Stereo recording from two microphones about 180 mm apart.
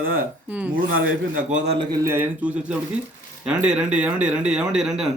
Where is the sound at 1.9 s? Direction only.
15° right (ahead or behind).